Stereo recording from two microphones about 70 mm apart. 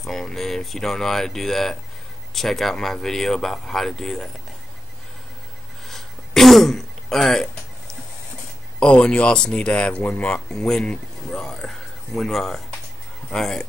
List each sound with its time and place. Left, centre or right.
0.0 s speech: centre
5.9 s throat clearing: centre
8.7 s speech: centre